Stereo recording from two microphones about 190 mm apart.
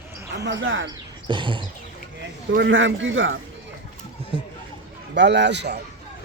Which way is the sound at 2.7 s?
85° right.